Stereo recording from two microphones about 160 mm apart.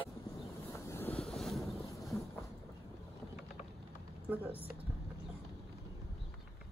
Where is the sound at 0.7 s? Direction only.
15° left (ahead or behind).